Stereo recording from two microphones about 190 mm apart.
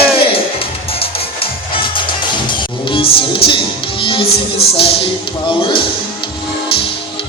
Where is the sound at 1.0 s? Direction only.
30° left (ahead or behind).